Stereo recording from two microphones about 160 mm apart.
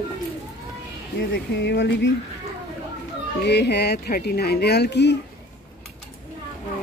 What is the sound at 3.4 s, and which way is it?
Speech, 90° left.